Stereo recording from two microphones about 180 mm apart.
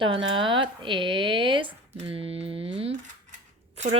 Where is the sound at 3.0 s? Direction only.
45° right (ahead or behind).